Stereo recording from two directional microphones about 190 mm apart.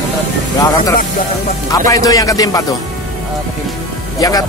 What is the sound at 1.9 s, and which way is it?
Speech, 20° left (ahead or behind).